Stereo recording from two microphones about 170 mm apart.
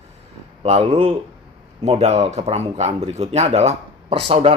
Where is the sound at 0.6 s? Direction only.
35° right (ahead or behind).